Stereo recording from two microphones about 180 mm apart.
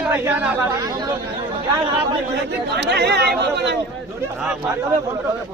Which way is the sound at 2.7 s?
65° right (ahead or behind).